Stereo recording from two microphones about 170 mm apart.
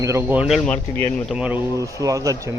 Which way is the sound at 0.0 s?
15° right (ahead or behind).